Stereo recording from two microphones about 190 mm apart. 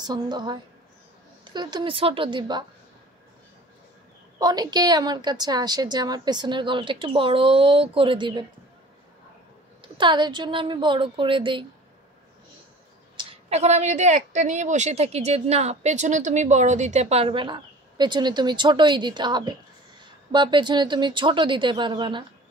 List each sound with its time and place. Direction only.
0.0 s a woman's voice: 20° right (ahead or behind)
4.4 s a woman's voice: 20° right (ahead or behind)
9.9 s a woman's voice: 25° right (ahead or behind)
13.1 s a woman's voice: 25° right (ahead or behind)